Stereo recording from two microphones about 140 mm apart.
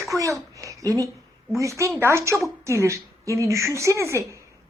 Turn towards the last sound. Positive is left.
turn(degrees=-20)  # may be behind; listen again after turning